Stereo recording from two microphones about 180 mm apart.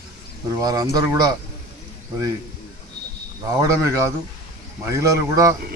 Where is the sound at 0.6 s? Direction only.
20° right (ahead or behind).